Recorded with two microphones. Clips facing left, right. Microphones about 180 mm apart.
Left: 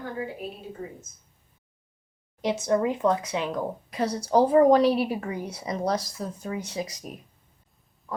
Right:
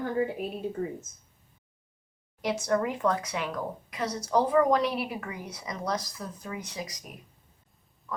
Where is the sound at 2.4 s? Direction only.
20° left (ahead or behind).